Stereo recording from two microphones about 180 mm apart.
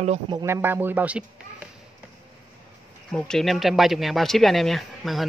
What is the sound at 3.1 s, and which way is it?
Speech, 5° left (ahead or behind).